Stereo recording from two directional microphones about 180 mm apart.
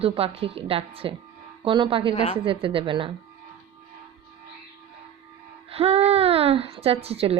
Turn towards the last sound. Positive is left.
turn(degrees=-35)  # may be behind; listen again after turning